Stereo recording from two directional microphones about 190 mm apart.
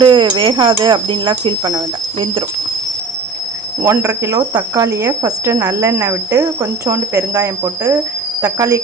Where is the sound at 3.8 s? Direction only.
15° right (ahead or behind).